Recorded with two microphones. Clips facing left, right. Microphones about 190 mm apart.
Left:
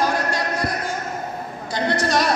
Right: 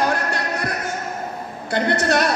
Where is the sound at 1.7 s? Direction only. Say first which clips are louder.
Right 2 dB; 60° right (ahead or behind).